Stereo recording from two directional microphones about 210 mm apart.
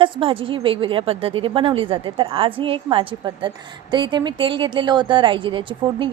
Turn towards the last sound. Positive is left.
turn(degrees=-25)  # may be behind; listen again after turning